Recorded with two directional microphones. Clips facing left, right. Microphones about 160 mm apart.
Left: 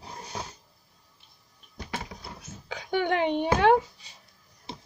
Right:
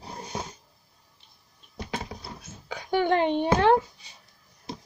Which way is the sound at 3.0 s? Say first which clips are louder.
Right 2 dB; 15° left (ahead or behind).